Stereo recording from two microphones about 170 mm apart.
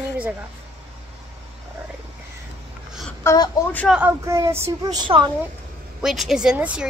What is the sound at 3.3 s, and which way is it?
Speech, 15° left (ahead or behind).